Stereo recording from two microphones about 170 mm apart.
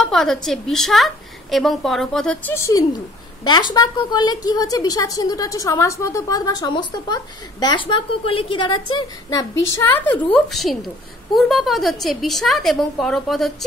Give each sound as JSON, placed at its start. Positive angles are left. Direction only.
{"t": 0.0, "sound": "a woman's voice", "side_deg": 0}